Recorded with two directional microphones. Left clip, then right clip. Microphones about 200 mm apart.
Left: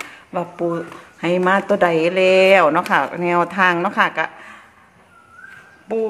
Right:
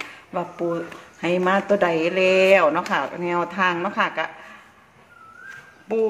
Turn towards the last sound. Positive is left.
turn(degrees=10)  # may be behind; listen again after turning